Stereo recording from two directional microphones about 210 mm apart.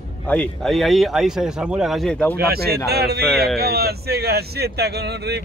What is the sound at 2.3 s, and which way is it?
Speech, 50° right (ahead or behind).